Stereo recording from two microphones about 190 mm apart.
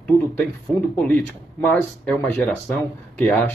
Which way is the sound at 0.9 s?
5° left (ahead or behind).